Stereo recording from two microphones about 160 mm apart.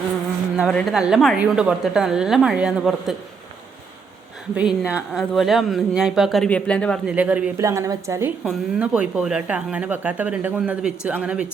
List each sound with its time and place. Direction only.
0.7 s speech: 5° left (ahead or behind)
4.5 s speech: 5° right (ahead or behind)
7.1 s speech: 10° right (ahead or behind)
7.6 s a woman's voice: 20° right (ahead or behind)
8.4 s speech: 5° right (ahead or behind)